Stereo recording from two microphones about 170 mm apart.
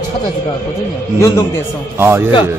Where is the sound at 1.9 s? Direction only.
15° right (ahead or behind).